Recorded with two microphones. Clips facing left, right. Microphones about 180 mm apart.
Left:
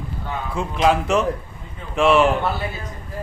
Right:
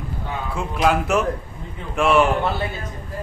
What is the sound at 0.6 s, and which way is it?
A man's voice, 5° right (ahead or behind).